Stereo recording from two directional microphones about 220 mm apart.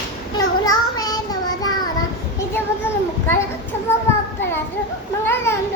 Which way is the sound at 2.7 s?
10° left (ahead or behind).